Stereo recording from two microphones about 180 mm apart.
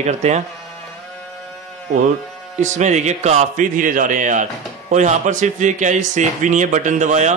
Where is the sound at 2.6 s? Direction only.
40° right (ahead or behind).